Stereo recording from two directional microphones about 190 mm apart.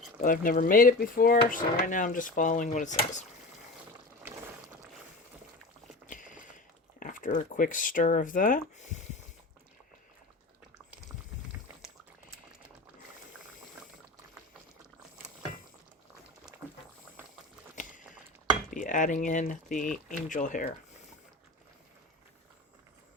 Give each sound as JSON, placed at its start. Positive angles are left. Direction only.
{"t": 0.2, "sound": "speech", "side_deg": 45}
{"t": 7.0, "sound": "speech", "side_deg": 45}
{"t": 18.7, "sound": "speech", "side_deg": 45}